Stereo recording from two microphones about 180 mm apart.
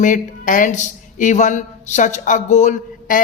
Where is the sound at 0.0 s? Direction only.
45° left (ahead or behind).